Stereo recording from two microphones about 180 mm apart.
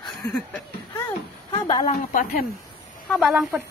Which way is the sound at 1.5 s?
25° left (ahead or behind).